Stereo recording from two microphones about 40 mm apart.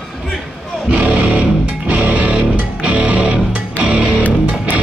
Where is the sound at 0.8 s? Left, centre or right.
Right.